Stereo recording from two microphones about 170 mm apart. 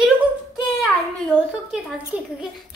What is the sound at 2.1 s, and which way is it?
Speech, 10° right (ahead or behind).